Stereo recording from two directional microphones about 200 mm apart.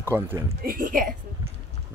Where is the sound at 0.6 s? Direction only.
45° right (ahead or behind).